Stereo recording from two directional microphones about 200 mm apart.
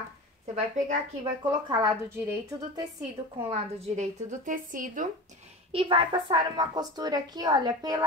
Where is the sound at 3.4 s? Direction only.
35° right (ahead or behind).